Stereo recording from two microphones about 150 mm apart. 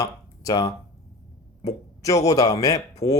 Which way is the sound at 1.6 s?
20° left (ahead or behind).